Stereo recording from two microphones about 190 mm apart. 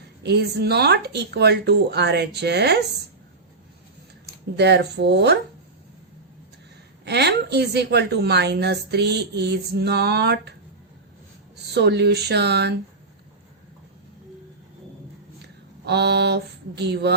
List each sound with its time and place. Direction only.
0.2 s a woman's voice: 60° right (ahead or behind)
4.5 s a woman's voice: 60° right (ahead or behind)
7.0 s a woman's voice: 60° right (ahead or behind)
11.7 s a woman's voice: 60° right (ahead or behind)
15.4 s speech: 60° right (ahead or behind)